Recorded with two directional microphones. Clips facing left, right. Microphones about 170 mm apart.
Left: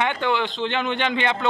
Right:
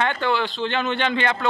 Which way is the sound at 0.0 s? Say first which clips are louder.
Even; 15° left (ahead or behind).